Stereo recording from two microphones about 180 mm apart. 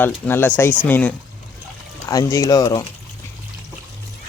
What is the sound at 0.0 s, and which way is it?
Speech, 10° left (ahead or behind).